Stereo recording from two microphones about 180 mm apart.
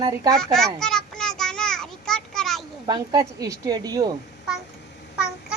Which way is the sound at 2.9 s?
20° right (ahead or behind).